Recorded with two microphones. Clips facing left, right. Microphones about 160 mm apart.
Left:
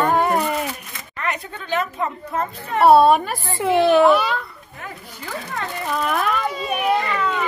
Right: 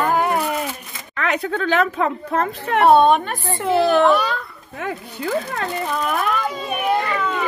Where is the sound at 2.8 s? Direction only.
5° left (ahead or behind).